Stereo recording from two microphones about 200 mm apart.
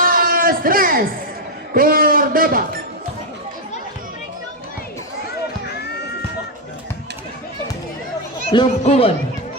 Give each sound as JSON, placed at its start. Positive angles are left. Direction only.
{"t": 0.0, "sound": "a sound", "side_deg": -45}
{"t": 1.7, "sound": "a man's voice", "side_deg": -45}
{"t": 8.4, "sound": "speech", "side_deg": 30}